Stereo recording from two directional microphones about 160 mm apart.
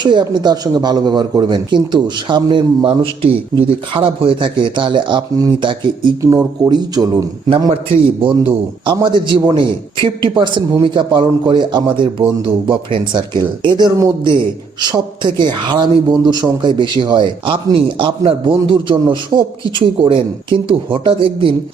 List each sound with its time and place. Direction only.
0.0 s speech: 30° right (ahead or behind)
8.2 s speech: 30° right (ahead or behind)